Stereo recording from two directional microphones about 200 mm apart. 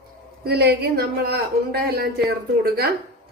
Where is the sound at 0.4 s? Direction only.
55° right (ahead or behind).